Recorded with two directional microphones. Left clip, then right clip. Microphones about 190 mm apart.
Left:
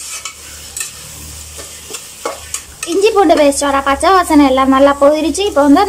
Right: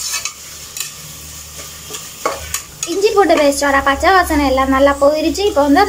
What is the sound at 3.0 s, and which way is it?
A woman's voice, 10° left (ahead or behind).